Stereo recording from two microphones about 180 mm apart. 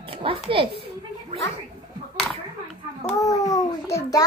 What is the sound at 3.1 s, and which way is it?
A child's voice, 20° left (ahead or behind).